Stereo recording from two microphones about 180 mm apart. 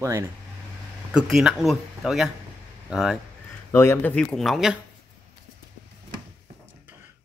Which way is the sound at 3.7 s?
15° left (ahead or behind).